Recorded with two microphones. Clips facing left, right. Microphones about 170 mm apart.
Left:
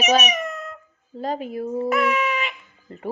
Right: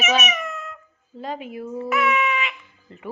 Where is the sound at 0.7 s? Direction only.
40° left (ahead or behind).